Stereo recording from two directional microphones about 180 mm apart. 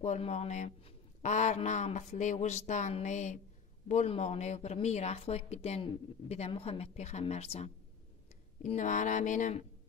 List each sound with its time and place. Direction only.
0.0 s speech: 40° left (ahead or behind)